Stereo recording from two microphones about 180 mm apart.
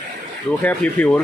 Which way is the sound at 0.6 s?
10° left (ahead or behind).